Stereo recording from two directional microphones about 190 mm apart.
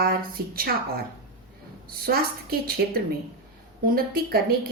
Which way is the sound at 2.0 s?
50° right (ahead or behind).